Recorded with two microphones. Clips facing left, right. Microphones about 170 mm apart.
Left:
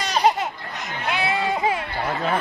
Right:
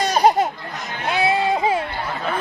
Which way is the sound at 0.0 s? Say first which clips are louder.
Right 4 dB; 45° right (ahead or behind).